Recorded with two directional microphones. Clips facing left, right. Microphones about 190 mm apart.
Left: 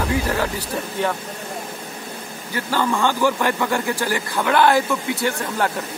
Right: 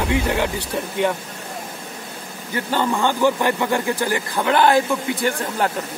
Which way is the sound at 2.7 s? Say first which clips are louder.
Even; 20° right (ahead or behind).